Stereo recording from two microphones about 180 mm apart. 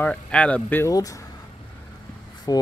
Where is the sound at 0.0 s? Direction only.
5° left (ahead or behind).